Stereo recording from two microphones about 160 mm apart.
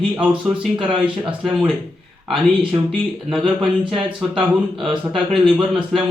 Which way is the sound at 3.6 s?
Centre (ahead or behind).